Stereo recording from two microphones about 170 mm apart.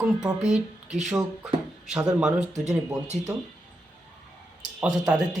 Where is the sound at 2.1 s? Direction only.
5° right (ahead or behind).